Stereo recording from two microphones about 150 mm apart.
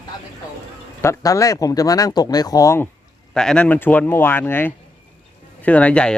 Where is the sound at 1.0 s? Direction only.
20° left (ahead or behind).